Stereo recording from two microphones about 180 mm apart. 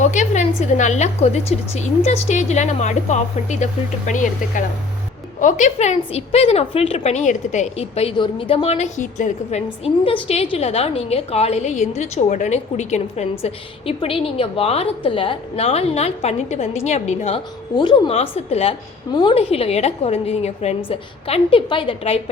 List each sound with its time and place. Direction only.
0.0 s a woman's voice: 40° left (ahead or behind)